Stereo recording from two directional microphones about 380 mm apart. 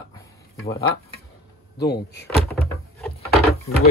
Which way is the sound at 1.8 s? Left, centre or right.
Left.